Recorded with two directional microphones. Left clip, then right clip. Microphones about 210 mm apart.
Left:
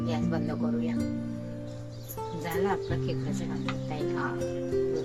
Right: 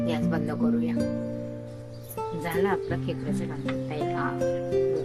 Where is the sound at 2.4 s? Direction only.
10° right (ahead or behind).